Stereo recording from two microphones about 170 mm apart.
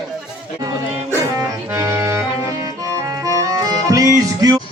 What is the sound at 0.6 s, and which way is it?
Music, 15° right (ahead or behind).